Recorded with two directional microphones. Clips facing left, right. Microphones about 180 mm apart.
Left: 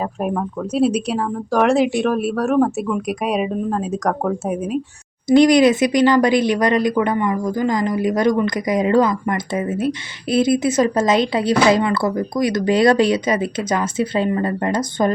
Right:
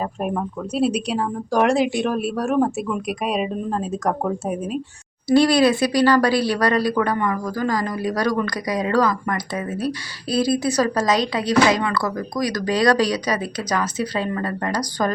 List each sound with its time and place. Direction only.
0.2 s speech: 5° left (ahead or behind)
2.9 s speech: 10° left (ahead or behind)
5.3 s speech: 20° left (ahead or behind)